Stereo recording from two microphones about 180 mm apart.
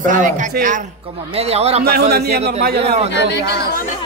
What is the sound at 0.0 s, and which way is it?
Speech, 45° right (ahead or behind).